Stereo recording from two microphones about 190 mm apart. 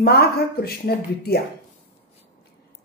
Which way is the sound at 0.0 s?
55° left (ahead or behind).